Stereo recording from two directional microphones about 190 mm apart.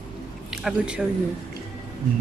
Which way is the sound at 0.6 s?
5° right (ahead or behind).